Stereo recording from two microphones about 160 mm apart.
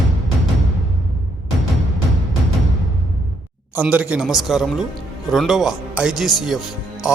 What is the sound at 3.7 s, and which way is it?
A man's voice, 10° right (ahead or behind).